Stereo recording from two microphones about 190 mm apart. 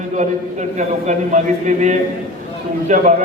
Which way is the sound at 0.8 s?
40° right (ahead or behind).